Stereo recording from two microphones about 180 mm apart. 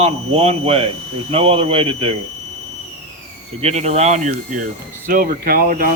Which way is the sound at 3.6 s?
35° right (ahead or behind).